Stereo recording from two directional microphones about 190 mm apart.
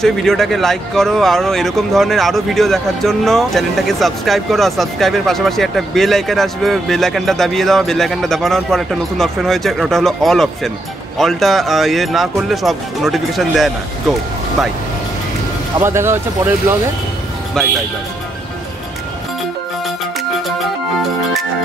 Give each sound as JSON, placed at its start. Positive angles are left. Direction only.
{"t": 0.0, "sound": "speech", "side_deg": 0}
{"t": 15.8, "sound": "speech", "side_deg": -15}